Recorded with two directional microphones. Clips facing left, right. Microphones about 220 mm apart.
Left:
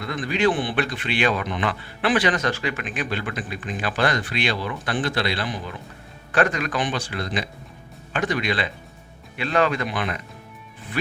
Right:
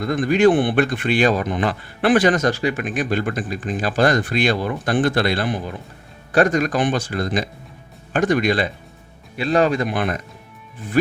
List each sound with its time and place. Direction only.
0.0 s speech: 45° right (ahead or behind)